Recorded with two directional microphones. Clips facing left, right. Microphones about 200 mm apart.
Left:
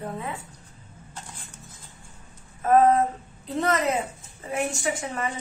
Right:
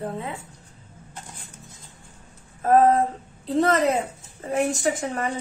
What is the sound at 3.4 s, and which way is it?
A woman's voice, 30° right (ahead or behind).